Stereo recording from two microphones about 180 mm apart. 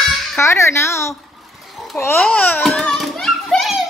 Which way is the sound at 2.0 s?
15° left (ahead or behind).